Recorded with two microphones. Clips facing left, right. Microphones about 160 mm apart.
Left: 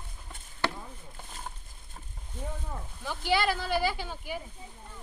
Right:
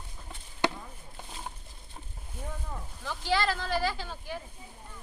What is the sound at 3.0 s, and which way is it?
Speech, 15° left (ahead or behind).